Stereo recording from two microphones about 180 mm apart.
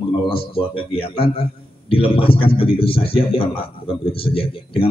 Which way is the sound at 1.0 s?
30° left (ahead or behind).